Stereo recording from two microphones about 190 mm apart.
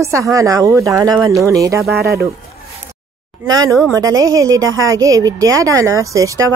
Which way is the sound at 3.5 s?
20° right (ahead or behind).